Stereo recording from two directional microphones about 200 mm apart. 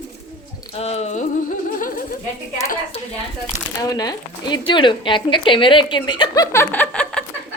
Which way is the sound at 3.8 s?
20° left (ahead or behind).